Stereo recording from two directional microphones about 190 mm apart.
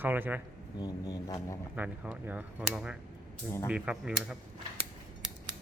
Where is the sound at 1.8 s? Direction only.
5° right (ahead or behind).